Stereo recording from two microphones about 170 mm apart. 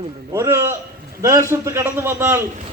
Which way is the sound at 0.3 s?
15° right (ahead or behind).